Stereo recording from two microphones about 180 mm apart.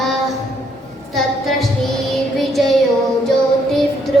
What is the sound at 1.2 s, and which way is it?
Music, centre (ahead or behind).